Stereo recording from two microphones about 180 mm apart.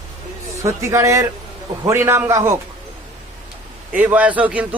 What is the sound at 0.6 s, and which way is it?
A man's voice, 15° right (ahead or behind).